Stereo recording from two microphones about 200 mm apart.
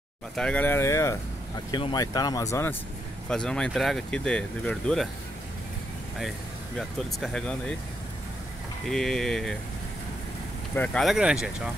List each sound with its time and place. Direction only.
0.4 s speech: 5° left (ahead or behind)
3.3 s speech: 5° left (ahead or behind)
6.8 s speech: centre (ahead or behind)
8.8 s speech: centre (ahead or behind)
10.7 s speech: 5° left (ahead or behind)